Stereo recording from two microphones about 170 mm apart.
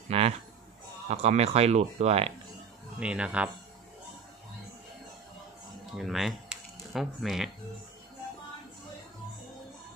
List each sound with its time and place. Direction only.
0.1 s a sound: 35° right (ahead or behind)
1.0 s speech: 40° right (ahead or behind)
3.0 s speech: 5° right (ahead or behind)
5.9 s speech: centre (ahead or behind)